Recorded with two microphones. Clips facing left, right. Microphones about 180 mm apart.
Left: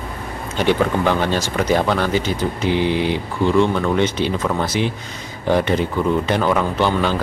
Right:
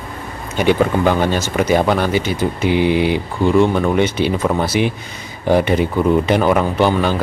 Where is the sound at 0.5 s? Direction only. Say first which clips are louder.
Right 3 dB; 10° right (ahead or behind).